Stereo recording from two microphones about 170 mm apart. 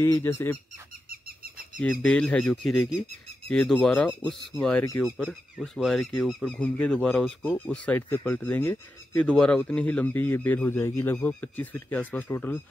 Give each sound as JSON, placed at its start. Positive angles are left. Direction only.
{"t": 0.0, "sound": "speech", "side_deg": 15}
{"t": 1.0, "sound": "a sound", "side_deg": -60}
{"t": 1.8, "sound": "speech", "side_deg": 5}